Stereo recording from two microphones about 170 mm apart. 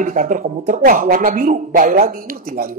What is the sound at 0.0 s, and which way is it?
Speech, 50° right (ahead or behind).